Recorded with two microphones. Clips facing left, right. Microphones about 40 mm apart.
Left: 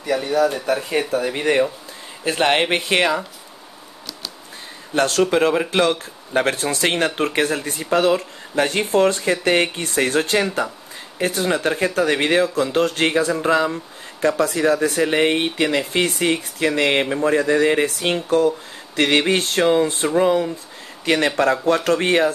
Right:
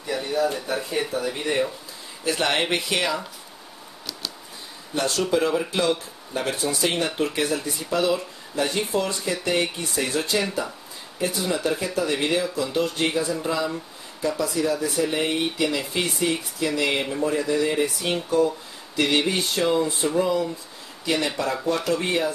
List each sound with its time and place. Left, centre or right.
0.0 s a sound: left
0.8 s speech: left
2.2 s speech: left
4.9 s speech: left